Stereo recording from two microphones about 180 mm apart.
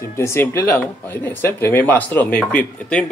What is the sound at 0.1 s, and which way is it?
Speech, 15° left (ahead or behind).